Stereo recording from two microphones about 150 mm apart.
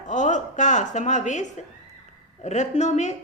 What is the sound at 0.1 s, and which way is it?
A woman's voice, 55° left (ahead or behind).